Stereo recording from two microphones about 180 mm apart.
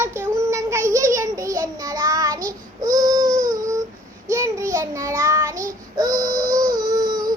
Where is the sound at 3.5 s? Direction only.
20° right (ahead or behind).